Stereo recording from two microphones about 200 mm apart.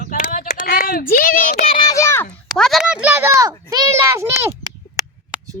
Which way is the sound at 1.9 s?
15° left (ahead or behind).